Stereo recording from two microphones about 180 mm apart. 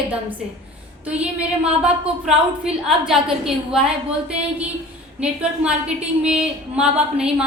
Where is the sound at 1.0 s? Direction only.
5° right (ahead or behind).